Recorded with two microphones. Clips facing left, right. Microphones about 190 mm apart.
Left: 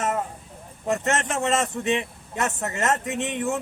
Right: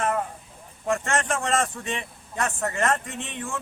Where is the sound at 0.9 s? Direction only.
20° left (ahead or behind).